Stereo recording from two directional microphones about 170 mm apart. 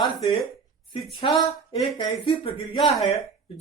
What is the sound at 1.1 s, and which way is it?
Speech, 30° left (ahead or behind).